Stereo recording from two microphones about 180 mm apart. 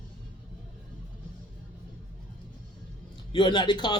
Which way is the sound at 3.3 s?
25° left (ahead or behind).